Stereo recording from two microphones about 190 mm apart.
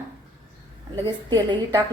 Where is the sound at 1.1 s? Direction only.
25° right (ahead or behind).